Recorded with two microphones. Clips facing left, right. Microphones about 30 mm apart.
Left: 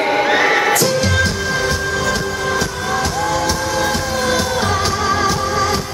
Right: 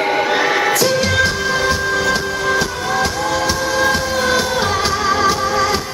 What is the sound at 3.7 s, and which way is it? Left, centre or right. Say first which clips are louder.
Music: right 2 dB; centre.